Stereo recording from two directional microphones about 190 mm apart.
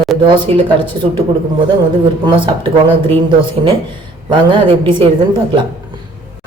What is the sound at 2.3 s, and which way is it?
Speech, 25° right (ahead or behind).